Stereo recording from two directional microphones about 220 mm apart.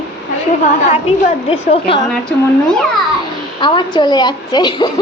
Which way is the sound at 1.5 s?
25° left (ahead or behind).